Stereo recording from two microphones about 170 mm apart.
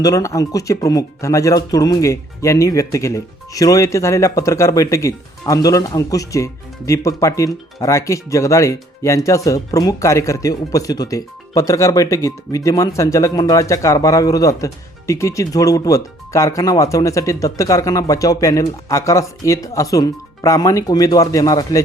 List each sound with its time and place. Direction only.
0.0 s speech: 20° left (ahead or behind)